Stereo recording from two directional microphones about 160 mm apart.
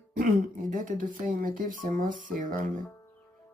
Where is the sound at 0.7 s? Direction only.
55° right (ahead or behind).